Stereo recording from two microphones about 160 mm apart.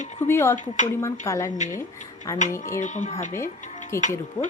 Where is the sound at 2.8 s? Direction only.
50° left (ahead or behind).